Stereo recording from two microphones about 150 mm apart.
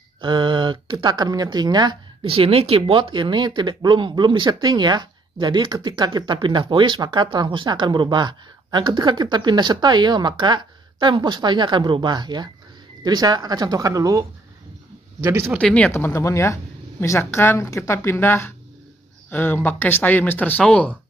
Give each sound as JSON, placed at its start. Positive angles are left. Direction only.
{"t": 0.2, "sound": "speech", "side_deg": -30}
{"t": 15.2, "sound": "speech", "side_deg": -15}
{"t": 15.6, "sound": "speech", "side_deg": 5}
{"t": 15.9, "sound": "speech", "side_deg": 15}